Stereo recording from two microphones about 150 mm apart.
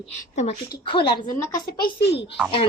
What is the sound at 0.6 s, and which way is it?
Speech, 30° left (ahead or behind).